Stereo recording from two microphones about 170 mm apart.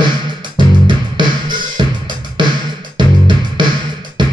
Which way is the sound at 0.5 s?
30° right (ahead or behind).